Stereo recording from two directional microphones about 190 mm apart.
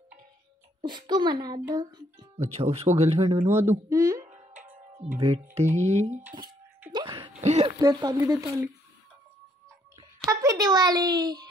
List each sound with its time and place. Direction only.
0.7 s a child's voice: 25° right (ahead or behind)
2.4 s speech: 35° right (ahead or behind)
3.3 s speech: 10° right (ahead or behind)
4.3 s music: 35° right (ahead or behind)
5.1 s speech: 15° right (ahead or behind)
5.6 s speech: 35° right (ahead or behind)
6.9 s music: 25° right (ahead or behind)
7.4 s speech: 35° right (ahead or behind)
7.8 s a child's voice: 20° right (ahead or behind)
10.3 s a child's voice: 20° right (ahead or behind)